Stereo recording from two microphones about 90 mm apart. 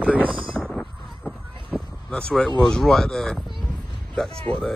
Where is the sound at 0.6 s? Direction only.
5° left (ahead or behind).